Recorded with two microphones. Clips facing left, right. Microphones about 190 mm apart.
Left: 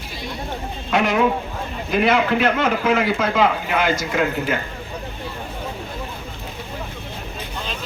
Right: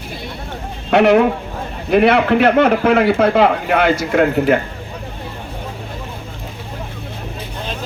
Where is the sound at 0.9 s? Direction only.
65° right (ahead or behind).